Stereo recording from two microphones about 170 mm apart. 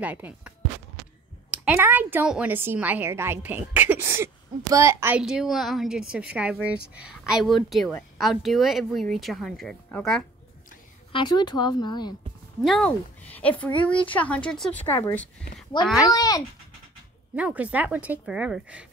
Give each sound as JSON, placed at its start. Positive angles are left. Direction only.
{"t": 0.0, "sound": "a woman's voice", "side_deg": -10}
{"t": 1.5, "sound": "a woman's voice", "side_deg": -5}
{"t": 5.2, "sound": "a woman's voice", "side_deg": -5}
{"t": 11.1, "sound": "speech", "side_deg": 30}
{"t": 12.6, "sound": "speech", "side_deg": 5}
{"t": 15.8, "sound": "speech", "side_deg": 25}
{"t": 17.4, "sound": "a woman's voice", "side_deg": -10}